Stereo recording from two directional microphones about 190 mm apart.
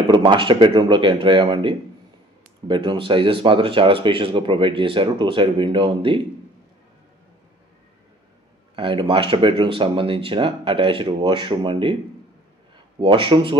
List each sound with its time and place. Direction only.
0.1 s speech: 25° right (ahead or behind)
8.7 s speech: 25° right (ahead or behind)
13.0 s speech: 25° right (ahead or behind)